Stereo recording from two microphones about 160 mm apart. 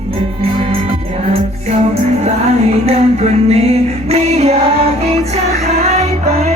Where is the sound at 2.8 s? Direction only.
40° right (ahead or behind).